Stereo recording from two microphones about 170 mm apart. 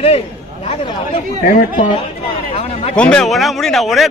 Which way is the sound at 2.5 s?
35° left (ahead or behind).